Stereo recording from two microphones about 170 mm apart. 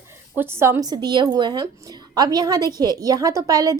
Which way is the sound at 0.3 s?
15° right (ahead or behind).